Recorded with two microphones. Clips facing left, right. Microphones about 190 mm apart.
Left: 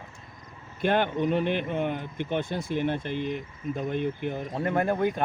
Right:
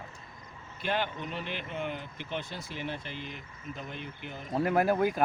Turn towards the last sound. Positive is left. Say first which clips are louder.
# left 1 dB
turn(degrees=-5)  # may be behind; listen again after turning